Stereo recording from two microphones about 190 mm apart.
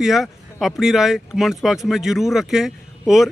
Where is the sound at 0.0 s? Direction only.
Centre (ahead or behind).